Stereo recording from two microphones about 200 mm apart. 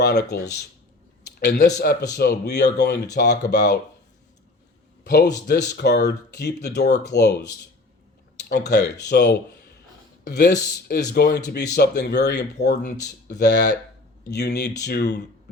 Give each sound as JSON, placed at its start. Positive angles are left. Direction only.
{"t": 0.0, "sound": "speech", "side_deg": 55}
{"t": 1.5, "sound": "speech", "side_deg": 55}
{"t": 5.0, "sound": "a man's voice", "side_deg": 50}
{"t": 8.4, "sound": "speech", "side_deg": 55}